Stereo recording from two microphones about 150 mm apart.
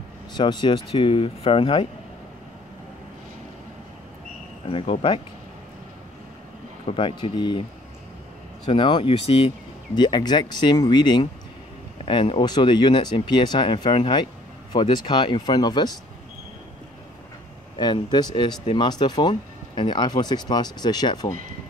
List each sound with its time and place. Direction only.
0.3 s speech: 30° left (ahead or behind)
4.6 s speech: 40° left (ahead or behind)
6.9 s speech: 35° left (ahead or behind)
8.6 s speech: 35° left (ahead or behind)
17.7 s speech: 30° left (ahead or behind)